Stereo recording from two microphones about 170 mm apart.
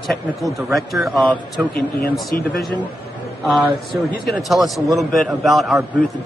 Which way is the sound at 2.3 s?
60° left (ahead or behind).